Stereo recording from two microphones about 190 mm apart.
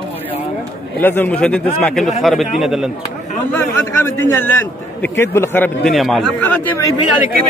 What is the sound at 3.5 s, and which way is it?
A man's voice, 15° left (ahead or behind).